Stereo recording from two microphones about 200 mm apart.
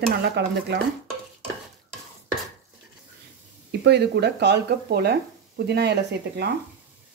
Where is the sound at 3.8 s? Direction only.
55° right (ahead or behind).